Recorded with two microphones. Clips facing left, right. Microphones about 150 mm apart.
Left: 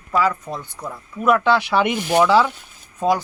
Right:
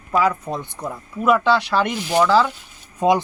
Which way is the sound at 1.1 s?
Centre (ahead or behind).